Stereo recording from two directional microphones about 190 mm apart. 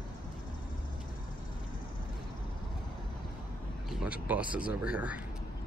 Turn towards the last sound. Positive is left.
turn(degrees=-5)  # may be behind; listen again after turning